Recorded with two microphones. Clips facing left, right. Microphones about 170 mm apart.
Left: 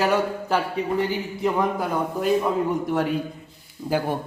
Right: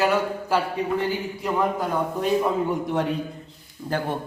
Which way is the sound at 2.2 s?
Centre (ahead or behind).